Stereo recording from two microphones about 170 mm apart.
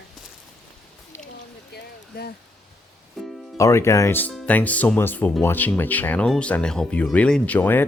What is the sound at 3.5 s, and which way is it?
Speech, 15° left (ahead or behind).